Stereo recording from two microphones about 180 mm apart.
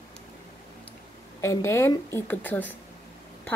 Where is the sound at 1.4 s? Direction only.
15° left (ahead or behind).